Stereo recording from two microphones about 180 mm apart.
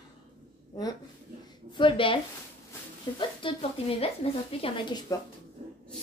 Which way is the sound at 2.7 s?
25° left (ahead or behind).